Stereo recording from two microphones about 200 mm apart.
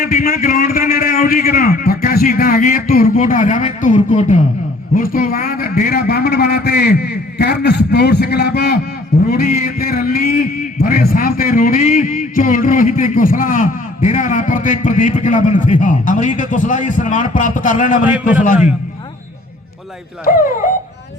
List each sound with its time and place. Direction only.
0.0 s a man's voice: 45° left (ahead or behind)
18.1 s a man's voice: 5° right (ahead or behind)
20.2 s a man's voice: 45° left (ahead or behind)